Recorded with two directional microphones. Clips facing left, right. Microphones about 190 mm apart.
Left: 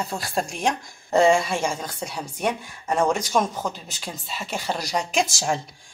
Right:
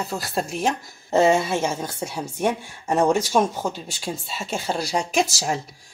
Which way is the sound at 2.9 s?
10° right (ahead or behind).